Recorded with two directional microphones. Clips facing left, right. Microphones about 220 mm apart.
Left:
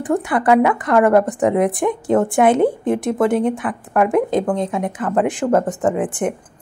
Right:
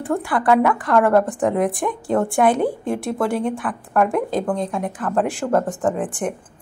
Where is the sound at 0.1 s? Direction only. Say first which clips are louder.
Left 3 dB; 20° left (ahead or behind).